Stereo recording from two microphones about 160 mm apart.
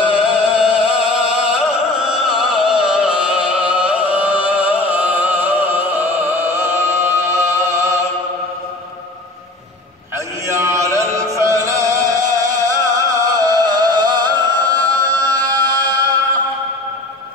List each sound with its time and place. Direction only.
0.1 s music: 5° right (ahead or behind)
10.1 s a sound: 20° right (ahead or behind)
11.1 s music: 20° right (ahead or behind)